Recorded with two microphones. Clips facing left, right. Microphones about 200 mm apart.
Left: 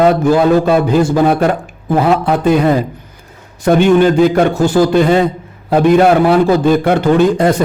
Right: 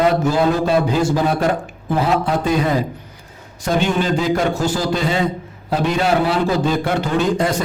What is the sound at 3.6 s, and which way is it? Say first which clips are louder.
A man's voice: left 9 dB; 60° left (ahead or behind).